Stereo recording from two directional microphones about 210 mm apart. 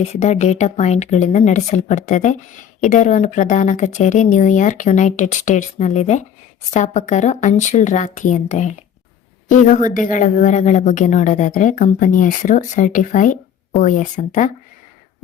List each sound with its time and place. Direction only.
0.0 s speech: 30° left (ahead or behind)